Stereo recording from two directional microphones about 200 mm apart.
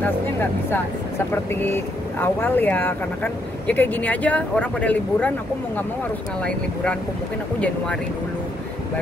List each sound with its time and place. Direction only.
0.0 s speech: 10° left (ahead or behind)
6.4 s speech: 5° left (ahead or behind)